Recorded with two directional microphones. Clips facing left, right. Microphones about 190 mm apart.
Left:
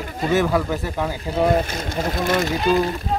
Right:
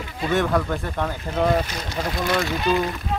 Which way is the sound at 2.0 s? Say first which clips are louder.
Left 2 dB; 45° left (ahead or behind).